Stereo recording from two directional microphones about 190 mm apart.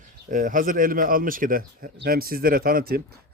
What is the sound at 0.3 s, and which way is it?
Speech, 45° right (ahead or behind).